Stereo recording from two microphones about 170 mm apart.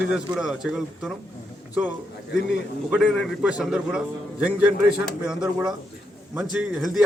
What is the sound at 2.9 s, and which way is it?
A man's voice, 5° right (ahead or behind).